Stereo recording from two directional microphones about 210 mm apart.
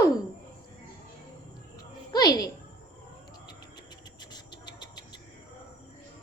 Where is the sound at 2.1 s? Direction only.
20° left (ahead or behind).